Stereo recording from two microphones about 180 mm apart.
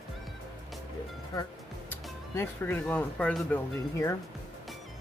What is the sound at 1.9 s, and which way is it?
Speech, 10° left (ahead or behind).